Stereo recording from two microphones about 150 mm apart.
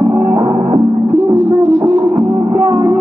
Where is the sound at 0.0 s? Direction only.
25° right (ahead or behind).